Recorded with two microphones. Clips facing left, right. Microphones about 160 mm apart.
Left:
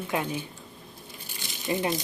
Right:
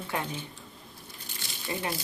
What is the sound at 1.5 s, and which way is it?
Crumpling, 20° left (ahead or behind).